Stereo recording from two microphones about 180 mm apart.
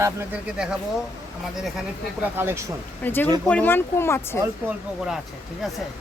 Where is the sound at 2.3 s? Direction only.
15° right (ahead or behind).